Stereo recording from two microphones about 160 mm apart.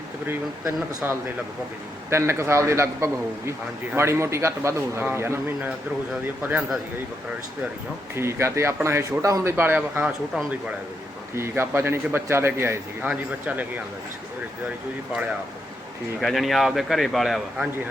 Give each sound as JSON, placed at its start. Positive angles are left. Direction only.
{"t": 1.0, "sound": "speech", "side_deg": -10}
{"t": 8.1, "sound": "speech", "side_deg": -15}
{"t": 16.2, "sound": "a man's voice", "side_deg": 0}